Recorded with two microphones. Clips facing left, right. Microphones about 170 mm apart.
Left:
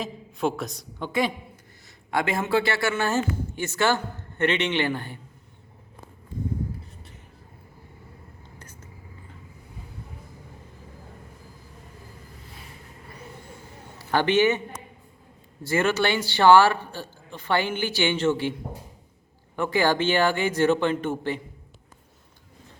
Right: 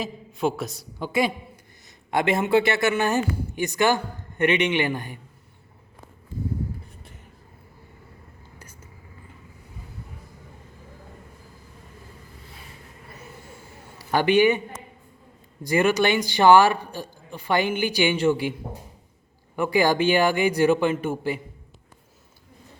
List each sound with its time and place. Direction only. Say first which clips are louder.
0.0 s a woman's voice: right 1 dB; centre (ahead or behind)
2.0 s speech: right 3 dB; 20° right (ahead or behind)
8.5 s whispering: even; 10° right (ahead or behind)
14.0 s a man's voice: right 2 dB; 10° right (ahead or behind)
15.6 s speech: right 3 dB; 15° right (ahead or behind)
19.5 s speech: right 2 dB; 10° right (ahead or behind)